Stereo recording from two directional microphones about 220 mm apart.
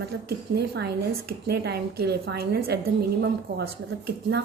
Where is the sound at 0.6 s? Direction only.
50° right (ahead or behind).